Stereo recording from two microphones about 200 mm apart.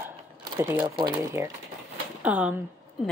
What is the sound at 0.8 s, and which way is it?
Speech, 20° right (ahead or behind).